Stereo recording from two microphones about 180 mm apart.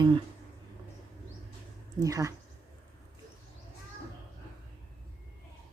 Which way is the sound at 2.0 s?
20° right (ahead or behind).